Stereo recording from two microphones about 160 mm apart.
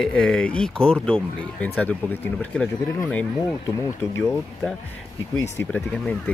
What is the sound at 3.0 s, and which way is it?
Speech, 10° left (ahead or behind).